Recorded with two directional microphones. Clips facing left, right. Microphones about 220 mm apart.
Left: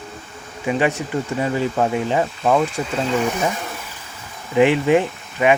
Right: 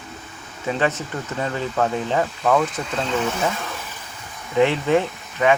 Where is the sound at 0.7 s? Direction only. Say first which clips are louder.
Left 3 dB; 15° left (ahead or behind).